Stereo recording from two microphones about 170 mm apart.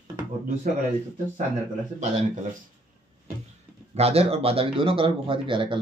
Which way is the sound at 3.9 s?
35° right (ahead or behind).